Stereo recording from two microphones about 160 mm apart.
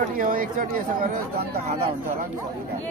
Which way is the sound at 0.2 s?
60° right (ahead or behind).